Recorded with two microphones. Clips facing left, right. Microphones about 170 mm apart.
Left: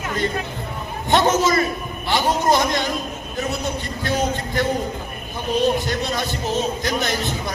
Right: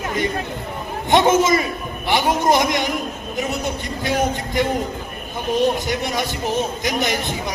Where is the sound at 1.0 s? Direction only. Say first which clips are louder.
Right 2 dB; 20° right (ahead or behind).